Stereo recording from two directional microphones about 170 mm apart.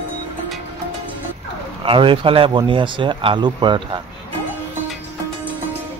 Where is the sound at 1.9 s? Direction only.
30° right (ahead or behind).